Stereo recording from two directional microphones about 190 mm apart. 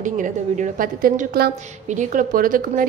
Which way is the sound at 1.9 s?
40° right (ahead or behind).